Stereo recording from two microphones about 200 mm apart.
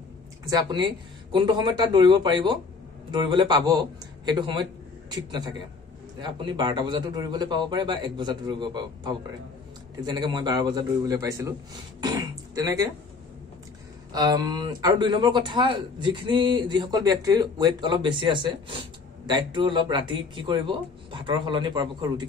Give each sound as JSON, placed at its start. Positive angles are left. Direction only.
{"t": 0.5, "sound": "speech", "side_deg": -20}
{"t": 14.1, "sound": "speech", "side_deg": -20}